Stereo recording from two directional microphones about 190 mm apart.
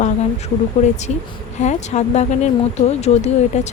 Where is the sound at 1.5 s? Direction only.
35° left (ahead or behind).